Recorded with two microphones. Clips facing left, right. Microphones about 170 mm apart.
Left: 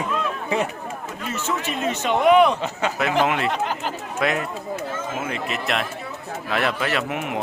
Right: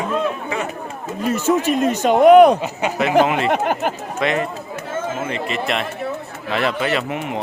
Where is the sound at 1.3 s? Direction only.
40° right (ahead or behind).